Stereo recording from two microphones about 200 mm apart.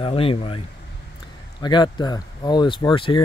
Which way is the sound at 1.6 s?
20° left (ahead or behind).